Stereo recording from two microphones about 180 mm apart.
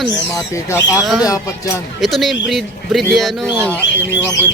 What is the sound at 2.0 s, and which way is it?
Speech, centre (ahead or behind).